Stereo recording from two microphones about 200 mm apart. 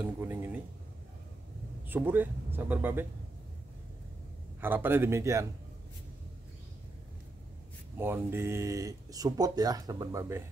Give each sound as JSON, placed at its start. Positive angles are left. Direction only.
{"t": 0.0, "sound": "speech", "side_deg": -10}
{"t": 1.9, "sound": "speech", "side_deg": -10}
{"t": 4.6, "sound": "speech", "side_deg": -10}
{"t": 8.0, "sound": "speech", "side_deg": -10}